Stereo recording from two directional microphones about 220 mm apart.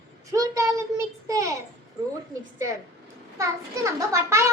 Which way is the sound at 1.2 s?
15° right (ahead or behind).